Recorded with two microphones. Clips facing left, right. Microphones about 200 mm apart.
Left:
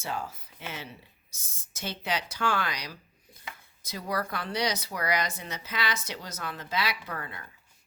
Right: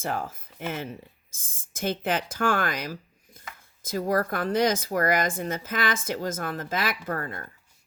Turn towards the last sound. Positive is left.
turn(degrees=-45)  # may be behind; listen again after turning